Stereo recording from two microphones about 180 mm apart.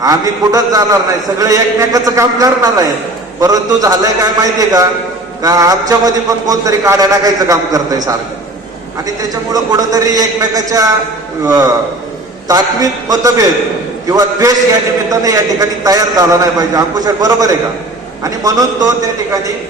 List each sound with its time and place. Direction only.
0.0 s a man's voice: 20° right (ahead or behind)